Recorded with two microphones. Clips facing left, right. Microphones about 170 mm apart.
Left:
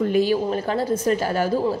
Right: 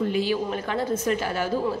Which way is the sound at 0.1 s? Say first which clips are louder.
Left 5 dB; 45° left (ahead or behind).